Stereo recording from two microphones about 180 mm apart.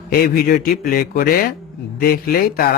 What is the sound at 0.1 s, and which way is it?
Speech, 55° left (ahead or behind).